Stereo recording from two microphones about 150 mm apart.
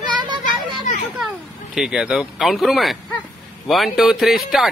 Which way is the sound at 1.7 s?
5° right (ahead or behind).